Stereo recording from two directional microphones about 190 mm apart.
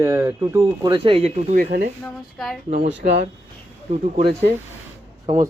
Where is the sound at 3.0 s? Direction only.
40° right (ahead or behind).